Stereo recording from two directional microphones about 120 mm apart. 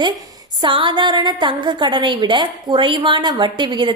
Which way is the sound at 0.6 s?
45° right (ahead or behind).